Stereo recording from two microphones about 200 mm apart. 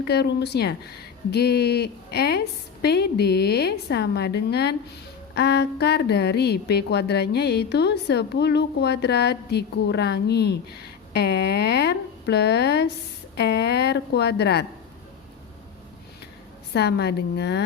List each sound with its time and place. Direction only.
0.0 s a woman's voice: 55° left (ahead or behind)
16.7 s a woman's voice: 55° left (ahead or behind)